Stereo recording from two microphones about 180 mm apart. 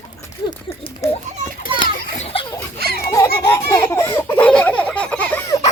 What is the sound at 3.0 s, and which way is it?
Baby laughter, 15° left (ahead or behind).